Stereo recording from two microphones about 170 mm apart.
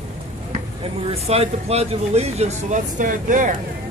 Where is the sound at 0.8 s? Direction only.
35° right (ahead or behind); by 3.5 s 50° right (ahead or behind).